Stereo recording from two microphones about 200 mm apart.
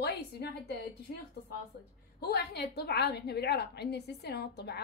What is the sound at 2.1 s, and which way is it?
A woman's voice, 50° left (ahead or behind).